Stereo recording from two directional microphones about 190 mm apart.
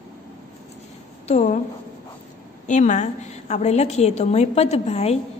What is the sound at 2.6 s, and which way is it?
A woman's voice, 40° left (ahead or behind).